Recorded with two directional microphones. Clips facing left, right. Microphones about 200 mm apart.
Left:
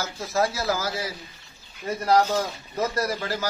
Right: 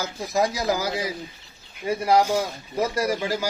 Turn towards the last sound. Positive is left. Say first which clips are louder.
# right 3 dB
turn(degrees=-15)  # may be behind; listen again after turning